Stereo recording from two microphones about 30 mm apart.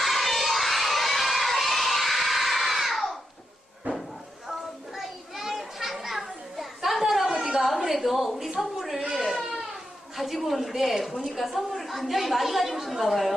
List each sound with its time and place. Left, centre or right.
0.0 s crowd: centre
3.9 s a sound: right
4.9 s children playing: centre
7.9 s a sound: centre
9.0 s baby cry: centre
10.2 s a woman's voice: centre